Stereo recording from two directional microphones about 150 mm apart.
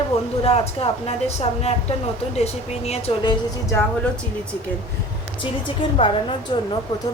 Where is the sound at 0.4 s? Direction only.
40° left (ahead or behind).